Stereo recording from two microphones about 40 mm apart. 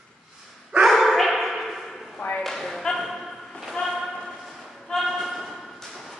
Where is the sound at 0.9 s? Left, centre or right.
Centre.